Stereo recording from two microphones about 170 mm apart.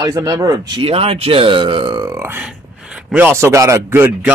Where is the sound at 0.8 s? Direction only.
35° right (ahead or behind); by 2.4 s 15° right (ahead or behind).